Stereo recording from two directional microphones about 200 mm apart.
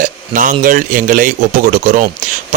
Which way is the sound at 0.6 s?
40° right (ahead or behind).